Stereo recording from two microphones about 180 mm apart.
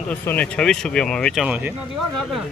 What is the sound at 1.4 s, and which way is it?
Speech, 10° right (ahead or behind).